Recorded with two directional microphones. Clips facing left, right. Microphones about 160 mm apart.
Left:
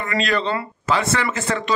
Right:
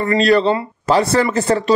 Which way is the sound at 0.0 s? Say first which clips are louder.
Right 8 dB; 35° right (ahead or behind).